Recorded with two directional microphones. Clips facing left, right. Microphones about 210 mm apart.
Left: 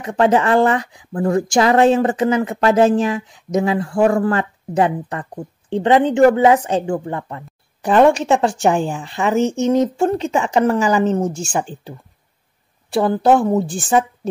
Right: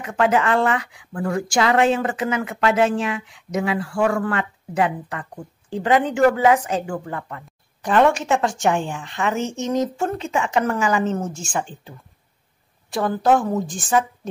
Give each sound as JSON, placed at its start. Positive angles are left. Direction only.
{"t": 0.0, "sound": "speech", "side_deg": 35}
{"t": 12.9, "sound": "speech", "side_deg": 30}